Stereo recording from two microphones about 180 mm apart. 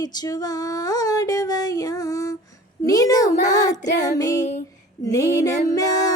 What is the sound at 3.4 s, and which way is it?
Child singing, 45° left (ahead or behind).